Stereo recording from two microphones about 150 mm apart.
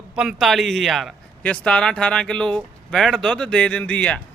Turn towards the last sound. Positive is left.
turn(degrees=10)  # may be behind; listen again after turning